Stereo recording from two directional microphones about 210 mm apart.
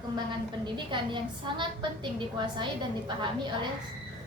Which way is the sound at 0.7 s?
20° right (ahead or behind).